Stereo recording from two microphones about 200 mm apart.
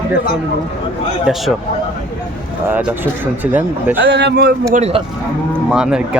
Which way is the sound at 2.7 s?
10° right (ahead or behind).